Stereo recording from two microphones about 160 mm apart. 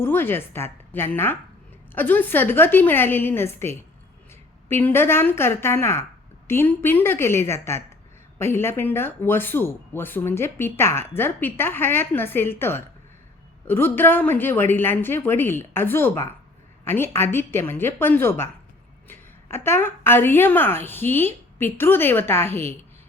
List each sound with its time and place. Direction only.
0.0 s speech: 15° left (ahead or behind)